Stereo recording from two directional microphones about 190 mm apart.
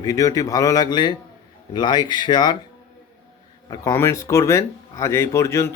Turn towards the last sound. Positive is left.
turn(degrees=15)  # may be behind; listen again after turning